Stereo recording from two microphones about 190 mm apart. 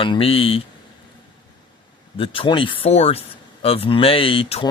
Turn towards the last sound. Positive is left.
turn(degrees=30)  # may be behind; listen again after turning